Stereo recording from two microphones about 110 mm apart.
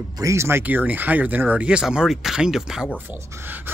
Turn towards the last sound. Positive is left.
turn(degrees=-20)  # may be behind; listen again after turning